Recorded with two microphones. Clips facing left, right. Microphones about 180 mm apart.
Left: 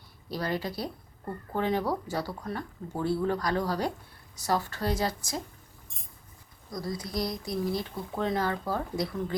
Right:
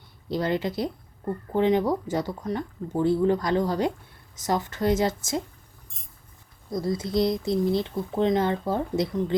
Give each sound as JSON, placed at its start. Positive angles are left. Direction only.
{"t": 0.3, "sound": "speech", "side_deg": -20}
{"t": 6.7, "sound": "speech", "side_deg": -25}